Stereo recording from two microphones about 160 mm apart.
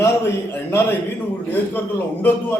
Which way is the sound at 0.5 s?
15° left (ahead or behind).